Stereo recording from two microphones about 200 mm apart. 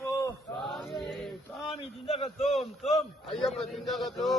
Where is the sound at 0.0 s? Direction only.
15° left (ahead or behind).